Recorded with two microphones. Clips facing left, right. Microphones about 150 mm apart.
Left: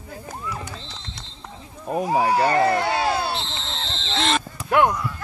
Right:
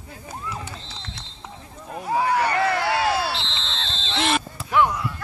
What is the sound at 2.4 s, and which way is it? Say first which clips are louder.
Speech: left 3 dB; 40° left (ahead or behind).